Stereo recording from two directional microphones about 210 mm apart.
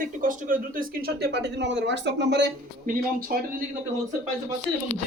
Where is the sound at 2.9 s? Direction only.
40° right (ahead or behind).